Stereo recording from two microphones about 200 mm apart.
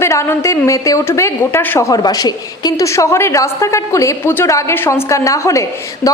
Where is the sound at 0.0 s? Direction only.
15° left (ahead or behind).